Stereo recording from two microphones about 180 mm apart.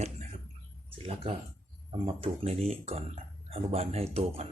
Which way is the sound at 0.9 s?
30° right (ahead or behind).